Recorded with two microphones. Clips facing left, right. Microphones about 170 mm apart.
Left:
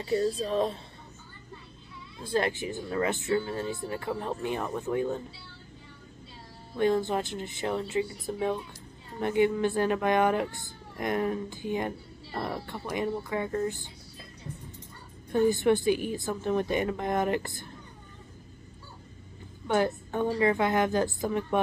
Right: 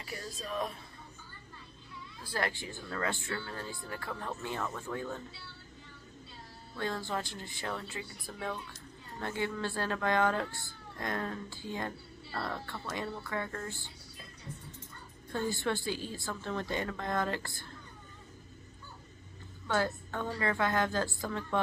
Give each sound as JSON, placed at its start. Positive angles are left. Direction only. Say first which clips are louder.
{"t": 0.0, "sound": "speech", "louder": "left 15 dB", "side_deg": 30}
{"t": 2.2, "sound": "speech", "louder": "left 8 dB", "side_deg": 20}
{"t": 6.7, "sound": "speech", "louder": "left 10 dB", "side_deg": 20}
{"t": 15.3, "sound": "speech", "louder": "left 10 dB", "side_deg": 20}
{"t": 19.7, "sound": "speech", "louder": "left 6 dB", "side_deg": 20}